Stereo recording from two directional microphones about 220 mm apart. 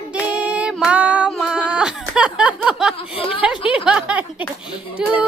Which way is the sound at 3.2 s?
25° left (ahead or behind).